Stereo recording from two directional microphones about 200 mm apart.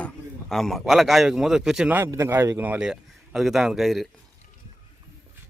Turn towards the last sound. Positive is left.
turn(degrees=0)  # may be behind; listen again after turning